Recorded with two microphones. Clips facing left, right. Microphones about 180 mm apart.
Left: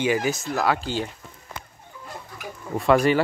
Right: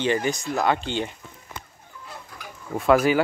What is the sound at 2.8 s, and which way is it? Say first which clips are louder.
Speech: even; centre (ahead or behind).